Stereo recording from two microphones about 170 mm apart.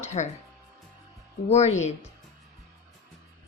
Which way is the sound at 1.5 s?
40° left (ahead or behind).